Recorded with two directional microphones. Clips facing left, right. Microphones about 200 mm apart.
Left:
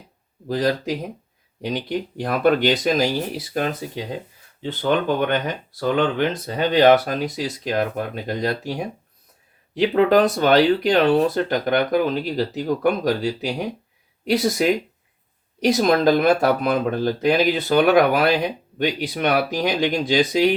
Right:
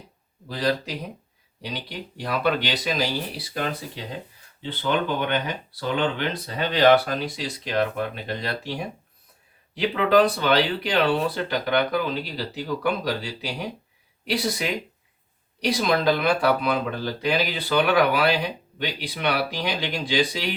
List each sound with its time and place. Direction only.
0.4 s speech: 45° left (ahead or behind)
9.7 s speech: 45° left (ahead or behind)